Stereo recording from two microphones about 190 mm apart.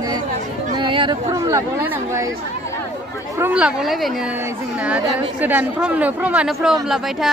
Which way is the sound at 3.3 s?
10° right (ahead or behind).